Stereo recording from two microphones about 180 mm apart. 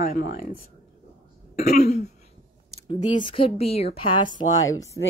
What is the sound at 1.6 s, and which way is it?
Speech, 40° left (ahead or behind).